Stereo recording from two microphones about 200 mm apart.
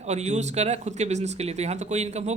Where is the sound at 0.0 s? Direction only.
35° right (ahead or behind).